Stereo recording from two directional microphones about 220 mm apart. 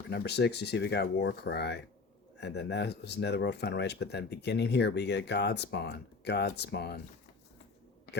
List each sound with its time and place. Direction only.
0.1 s speech: 50° left (ahead or behind)